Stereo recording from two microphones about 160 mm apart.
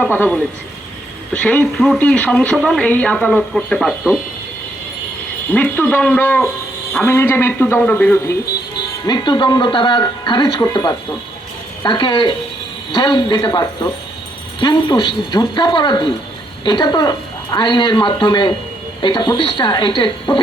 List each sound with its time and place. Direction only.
0.0 s speech: 10° left (ahead or behind)
5.5 s speech: 10° left (ahead or behind)
9.0 s speech: 25° left (ahead or behind)